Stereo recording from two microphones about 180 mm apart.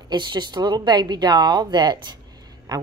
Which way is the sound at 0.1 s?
25° right (ahead or behind).